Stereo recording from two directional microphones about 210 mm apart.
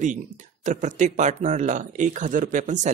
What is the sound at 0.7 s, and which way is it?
Speech, 35° right (ahead or behind).